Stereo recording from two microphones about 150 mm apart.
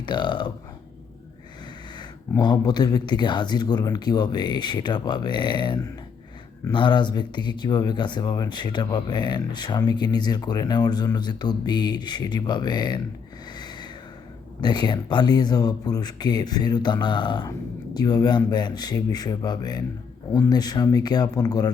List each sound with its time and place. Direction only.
0.0 s speech: 30° left (ahead or behind)
2.0 s speech: 30° left (ahead or behind)
13.6 s a sound: 30° left (ahead or behind)
14.6 s speech: 30° left (ahead or behind)